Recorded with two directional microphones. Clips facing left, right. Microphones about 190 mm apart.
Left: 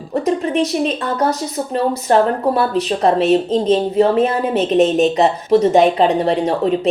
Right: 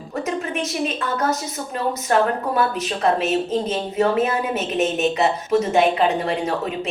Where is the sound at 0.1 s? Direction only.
35° left (ahead or behind).